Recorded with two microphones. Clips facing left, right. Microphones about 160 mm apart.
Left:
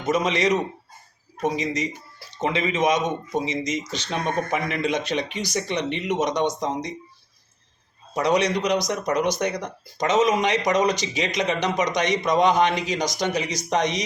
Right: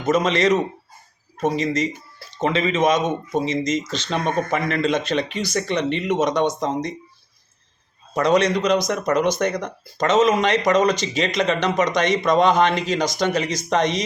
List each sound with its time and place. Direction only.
0.0 s speech: 15° left (ahead or behind)
8.1 s speech: 15° left (ahead or behind)